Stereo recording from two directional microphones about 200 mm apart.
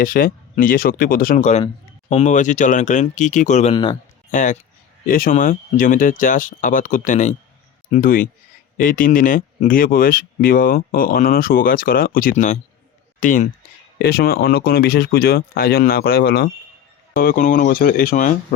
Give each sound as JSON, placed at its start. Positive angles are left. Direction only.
{"t": 0.0, "sound": "speech", "side_deg": 45}
{"t": 4.3, "sound": "speech", "side_deg": 40}